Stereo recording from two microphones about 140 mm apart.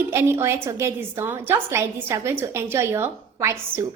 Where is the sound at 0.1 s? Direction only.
15° right (ahead or behind).